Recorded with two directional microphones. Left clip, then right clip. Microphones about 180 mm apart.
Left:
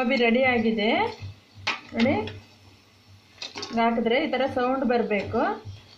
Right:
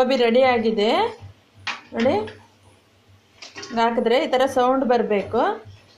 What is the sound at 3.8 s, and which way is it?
A woman's voice, 35° right (ahead or behind).